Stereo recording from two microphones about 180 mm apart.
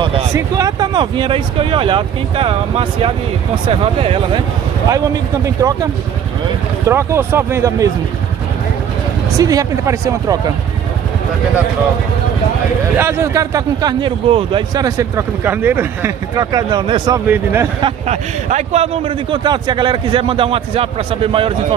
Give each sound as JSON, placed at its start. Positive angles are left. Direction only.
{"t": 0.0, "sound": "speech", "side_deg": -25}
{"t": 5.6, "sound": "speech", "side_deg": -20}
{"t": 6.9, "sound": "speech", "side_deg": -15}
{"t": 9.4, "sound": "speech", "side_deg": -20}
{"t": 12.9, "sound": "speech", "side_deg": -15}
{"t": 15.0, "sound": "speech", "side_deg": -15}
{"t": 17.3, "sound": "speech", "side_deg": -10}
{"t": 17.8, "sound": "speech", "side_deg": -40}
{"t": 19.3, "sound": "speech", "side_deg": -25}